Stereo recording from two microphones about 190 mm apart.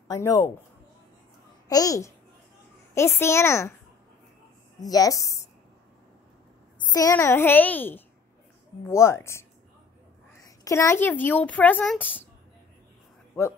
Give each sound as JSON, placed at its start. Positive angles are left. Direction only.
{"t": 0.1, "sound": "speech", "side_deg": 15}
{"t": 1.7, "sound": "speech", "side_deg": 20}
{"t": 4.7, "sound": "a woman's voice", "side_deg": 20}
{"t": 6.9, "sound": "speech", "side_deg": 20}
{"t": 10.6, "sound": "speech", "side_deg": 15}